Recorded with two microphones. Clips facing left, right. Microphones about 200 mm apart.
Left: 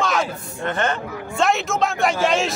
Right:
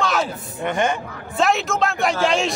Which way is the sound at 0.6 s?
15° right (ahead or behind).